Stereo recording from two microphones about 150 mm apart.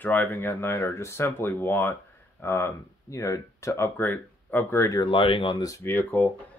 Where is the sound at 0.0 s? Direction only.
10° left (ahead or behind).